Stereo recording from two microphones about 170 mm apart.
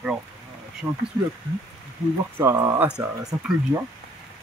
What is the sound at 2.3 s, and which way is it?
Speech, 10° right (ahead or behind).